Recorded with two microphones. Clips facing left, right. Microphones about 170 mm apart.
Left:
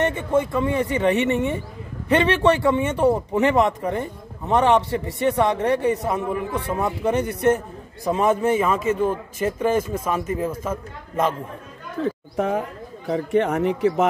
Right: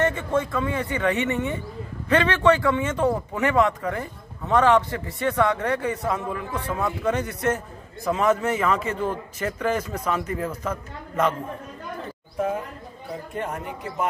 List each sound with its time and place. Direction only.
0.0 s a man's voice: 15° left (ahead or behind)
8.0 s a man's voice: 25° left (ahead or behind)
12.0 s speech: 90° left
13.1 s speech: 80° left